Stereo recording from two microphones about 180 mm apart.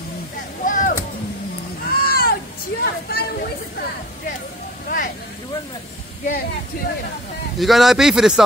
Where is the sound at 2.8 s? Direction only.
55° left (ahead or behind).